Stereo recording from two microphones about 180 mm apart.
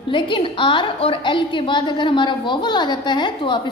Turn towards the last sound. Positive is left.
turn(degrees=25)  # may be behind; listen again after turning